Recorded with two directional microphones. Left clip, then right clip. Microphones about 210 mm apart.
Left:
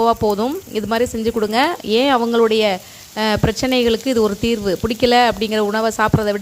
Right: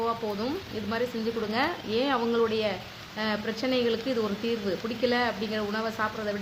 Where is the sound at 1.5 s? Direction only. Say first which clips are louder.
Left 11 dB; 50° left (ahead or behind).